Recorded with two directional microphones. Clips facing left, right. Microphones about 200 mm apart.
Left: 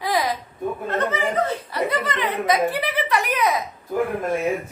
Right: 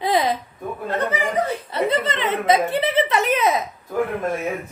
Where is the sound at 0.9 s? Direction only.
10° right (ahead or behind).